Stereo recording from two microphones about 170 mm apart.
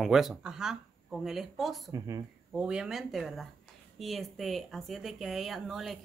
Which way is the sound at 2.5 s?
5° right (ahead or behind).